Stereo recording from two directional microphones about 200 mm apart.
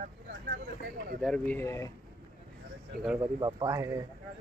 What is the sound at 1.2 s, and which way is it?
Speech, 5° left (ahead or behind).